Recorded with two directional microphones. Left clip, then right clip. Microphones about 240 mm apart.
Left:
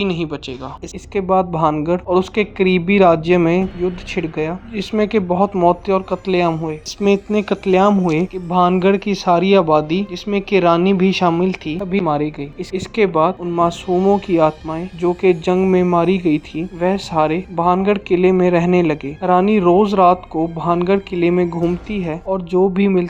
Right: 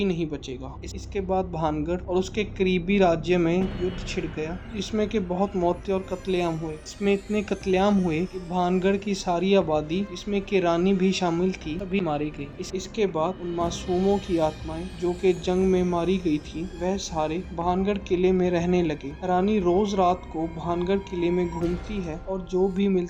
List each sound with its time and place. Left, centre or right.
0.0 s speech: centre
4.7 s speech: centre